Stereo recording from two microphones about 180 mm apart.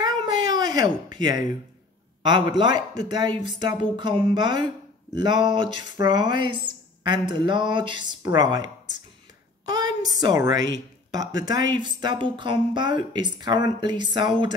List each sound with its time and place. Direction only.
0.0 s a sound: 20° right (ahead or behind)
1.1 s speech: 25° right (ahead or behind)
9.7 s a woman's voice: 20° right (ahead or behind)